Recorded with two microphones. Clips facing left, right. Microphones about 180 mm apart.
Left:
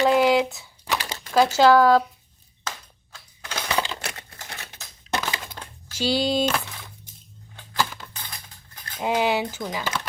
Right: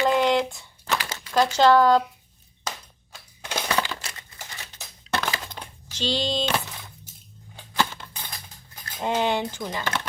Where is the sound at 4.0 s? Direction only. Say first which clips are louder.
Left 6 dB; 65° left (ahead or behind).